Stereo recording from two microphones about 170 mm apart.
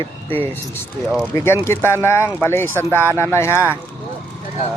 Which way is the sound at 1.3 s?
15° left (ahead or behind).